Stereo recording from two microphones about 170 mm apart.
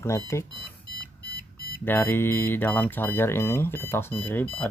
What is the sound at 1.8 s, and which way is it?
Speech, 10° left (ahead or behind).